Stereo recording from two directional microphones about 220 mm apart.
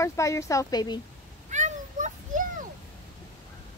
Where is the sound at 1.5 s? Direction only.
35° right (ahead or behind).